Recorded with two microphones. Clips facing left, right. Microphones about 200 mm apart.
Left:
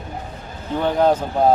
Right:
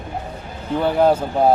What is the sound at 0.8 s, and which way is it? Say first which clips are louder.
Speech: right 1 dB; 10° right (ahead or behind).